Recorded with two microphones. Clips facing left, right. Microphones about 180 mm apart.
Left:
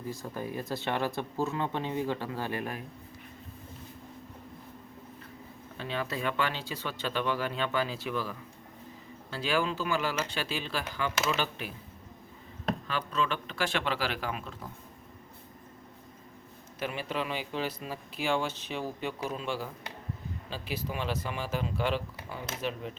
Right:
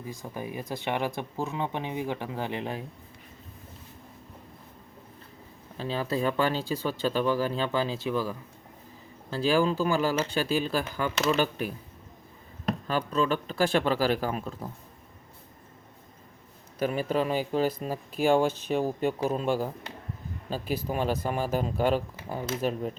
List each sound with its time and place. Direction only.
0.1 s speech: 15° right (ahead or behind)
5.7 s speech: 35° right (ahead or behind)
12.9 s speech: 40° right (ahead or behind)
16.8 s speech: 40° right (ahead or behind)